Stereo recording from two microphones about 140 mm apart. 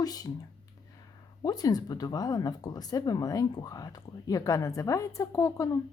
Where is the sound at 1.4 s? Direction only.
30° left (ahead or behind).